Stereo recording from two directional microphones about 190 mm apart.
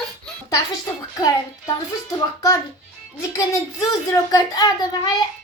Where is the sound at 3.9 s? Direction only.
20° left (ahead or behind).